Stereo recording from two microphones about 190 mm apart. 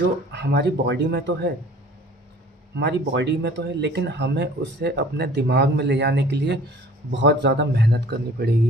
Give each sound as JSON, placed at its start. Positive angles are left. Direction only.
{"t": 0.3, "sound": "speech", "side_deg": -60}
{"t": 2.7, "sound": "speech", "side_deg": -65}